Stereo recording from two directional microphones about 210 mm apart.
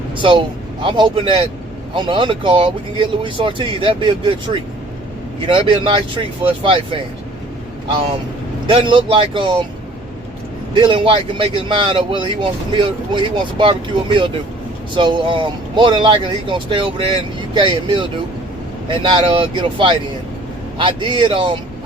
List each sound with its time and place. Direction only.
0.2 s speech: 20° right (ahead or behind)
8.7 s speech: 25° right (ahead or behind)
10.8 s speech: 25° right (ahead or behind)
19.0 s speech: 25° right (ahead or behind)